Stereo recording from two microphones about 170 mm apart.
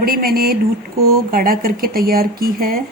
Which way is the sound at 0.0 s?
60° right (ahead or behind).